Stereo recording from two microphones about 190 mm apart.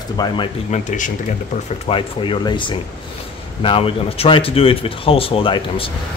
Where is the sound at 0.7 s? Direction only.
40° left (ahead or behind).